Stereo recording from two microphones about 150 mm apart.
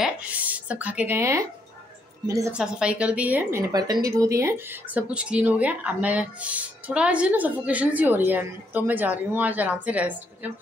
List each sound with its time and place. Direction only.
0.0 s a woman's voice: 10° right (ahead or behind)
2.5 s a woman's voice: 5° right (ahead or behind)